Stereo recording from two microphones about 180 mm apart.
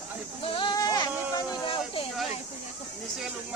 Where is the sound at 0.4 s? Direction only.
30° left (ahead or behind).